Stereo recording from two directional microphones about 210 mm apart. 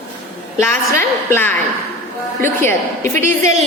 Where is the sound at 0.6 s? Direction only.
10° left (ahead or behind).